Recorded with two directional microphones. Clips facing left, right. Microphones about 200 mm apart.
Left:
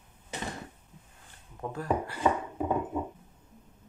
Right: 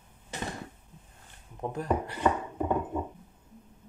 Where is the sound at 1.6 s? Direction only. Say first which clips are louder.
Right 1 dB; 20° right (ahead or behind).